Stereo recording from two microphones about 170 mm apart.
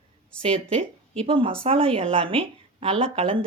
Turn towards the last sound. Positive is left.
turn(degrees=-35)  # may be behind; listen again after turning